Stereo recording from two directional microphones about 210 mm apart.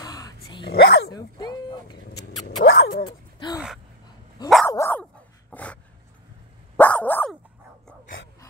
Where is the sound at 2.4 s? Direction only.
65° left (ahead or behind).